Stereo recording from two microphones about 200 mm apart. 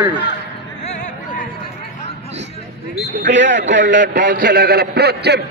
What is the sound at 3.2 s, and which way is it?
A man's voice, 65° right (ahead or behind).